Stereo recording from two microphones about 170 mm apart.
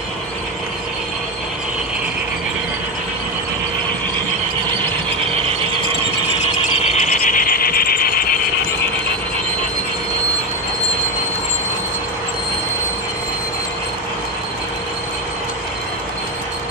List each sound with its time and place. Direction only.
7.0 s mechanisms: 55° left (ahead or behind)